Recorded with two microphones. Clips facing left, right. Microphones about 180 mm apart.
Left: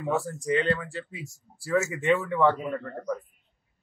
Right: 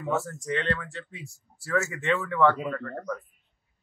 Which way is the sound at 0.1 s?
15° left (ahead or behind).